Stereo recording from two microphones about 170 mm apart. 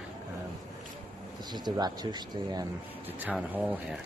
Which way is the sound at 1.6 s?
25° right (ahead or behind).